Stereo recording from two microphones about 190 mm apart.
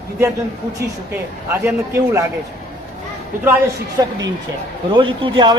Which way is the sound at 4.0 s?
20° right (ahead or behind).